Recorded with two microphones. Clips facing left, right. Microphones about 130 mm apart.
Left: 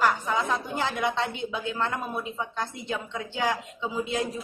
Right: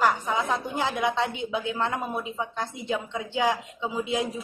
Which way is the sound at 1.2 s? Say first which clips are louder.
Right 2 dB; 15° right (ahead or behind).